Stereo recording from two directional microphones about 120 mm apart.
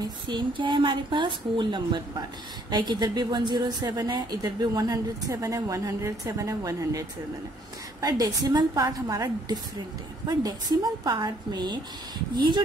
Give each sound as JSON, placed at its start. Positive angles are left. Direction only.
{"t": 0.0, "sound": "a woman's voice", "side_deg": -40}